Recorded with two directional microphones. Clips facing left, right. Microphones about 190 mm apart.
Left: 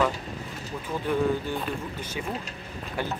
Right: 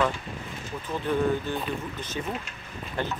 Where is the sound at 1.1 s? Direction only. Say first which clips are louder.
Even; 10° left (ahead or behind).